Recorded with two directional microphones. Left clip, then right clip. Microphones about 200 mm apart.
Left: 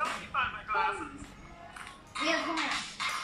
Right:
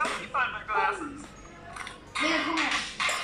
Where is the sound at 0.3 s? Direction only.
15° right (ahead or behind).